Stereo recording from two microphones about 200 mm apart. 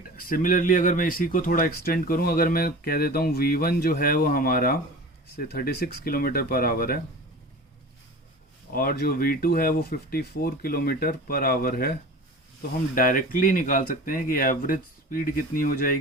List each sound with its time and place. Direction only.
0.2 s speech: 45° left (ahead or behind)
8.7 s speech: 45° left (ahead or behind)